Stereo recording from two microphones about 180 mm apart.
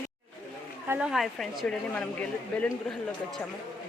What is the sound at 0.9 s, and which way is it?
A woman's voice, 5° right (ahead or behind).